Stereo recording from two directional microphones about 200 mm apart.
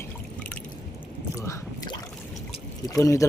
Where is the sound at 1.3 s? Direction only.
15° left (ahead or behind).